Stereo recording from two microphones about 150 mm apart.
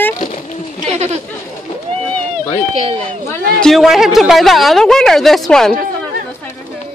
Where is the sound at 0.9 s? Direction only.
50° right (ahead or behind).